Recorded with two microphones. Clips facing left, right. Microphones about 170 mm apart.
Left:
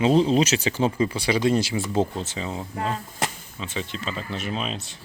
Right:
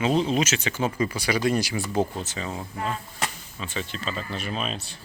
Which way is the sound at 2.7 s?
30° left (ahead or behind).